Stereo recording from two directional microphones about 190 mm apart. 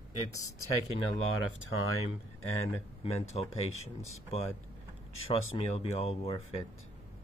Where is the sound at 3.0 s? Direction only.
30° left (ahead or behind).